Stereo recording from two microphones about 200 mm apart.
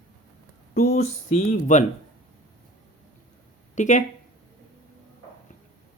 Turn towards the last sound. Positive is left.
turn(degrees=35)  # may be behind; listen again after turning